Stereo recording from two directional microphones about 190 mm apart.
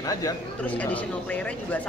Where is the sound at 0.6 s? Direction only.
10° left (ahead or behind).